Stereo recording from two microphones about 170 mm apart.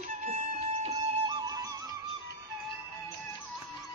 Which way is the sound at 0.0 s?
45° right (ahead or behind).